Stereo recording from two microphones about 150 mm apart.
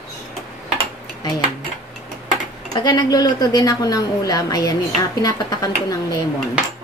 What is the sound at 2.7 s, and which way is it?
A woman's voice, 30° left (ahead or behind).